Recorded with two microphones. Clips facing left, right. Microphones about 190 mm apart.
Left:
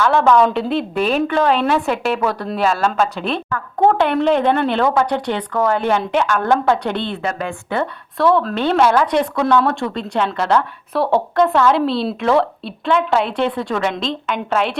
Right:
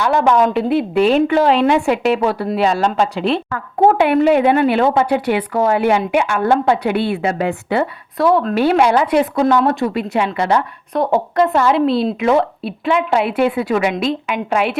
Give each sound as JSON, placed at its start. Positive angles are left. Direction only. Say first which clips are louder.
{"t": 0.0, "sound": "a woman's voice", "louder": "left 1 dB", "side_deg": -15}
{"t": 0.4, "sound": "a woman's voice", "louder": "right 3 dB", "side_deg": -5}
{"t": 2.6, "sound": "a woman's voice", "louder": "even", "side_deg": -20}
{"t": 4.8, "sound": "speech", "louder": "right 2 dB", "side_deg": -25}
{"t": 5.0, "sound": "a woman's voice", "louder": "right 4 dB", "side_deg": -10}
{"t": 9.4, "sound": "speech", "louder": "right 1 dB", "side_deg": -20}
{"t": 9.6, "sound": "a woman's voice", "louder": "right 4 dB", "side_deg": -5}
{"t": 10.9, "sound": "a woman's voice", "louder": "right 1 dB", "side_deg": 0}